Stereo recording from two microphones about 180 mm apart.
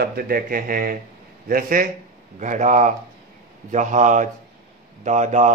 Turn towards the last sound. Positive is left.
turn(degrees=-40)  # may be behind; listen again after turning